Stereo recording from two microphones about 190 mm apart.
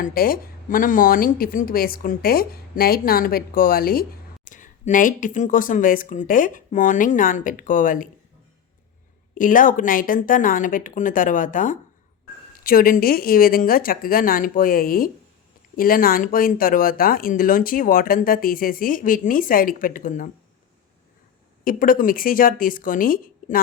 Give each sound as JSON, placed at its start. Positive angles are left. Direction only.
{"t": 0.0, "sound": "speech", "side_deg": 50}
{"t": 9.4, "sound": "speech", "side_deg": 45}
{"t": 21.6, "sound": "speech", "side_deg": 45}